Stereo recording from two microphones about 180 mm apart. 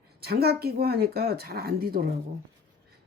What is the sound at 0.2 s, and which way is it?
Speech, 60° right (ahead or behind).